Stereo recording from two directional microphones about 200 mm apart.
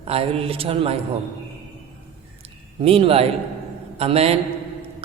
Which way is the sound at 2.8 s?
30° right (ahead or behind).